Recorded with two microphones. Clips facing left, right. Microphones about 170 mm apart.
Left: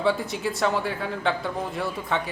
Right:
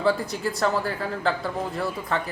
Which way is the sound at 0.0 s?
Centre (ahead or behind).